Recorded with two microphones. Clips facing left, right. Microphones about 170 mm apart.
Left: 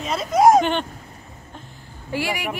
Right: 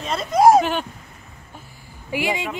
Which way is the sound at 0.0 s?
5° left (ahead or behind).